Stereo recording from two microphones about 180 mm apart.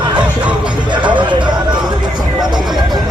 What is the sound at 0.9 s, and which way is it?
Music, 25° right (ahead or behind).